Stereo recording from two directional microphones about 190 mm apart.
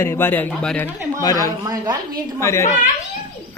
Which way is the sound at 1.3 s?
20° right (ahead or behind).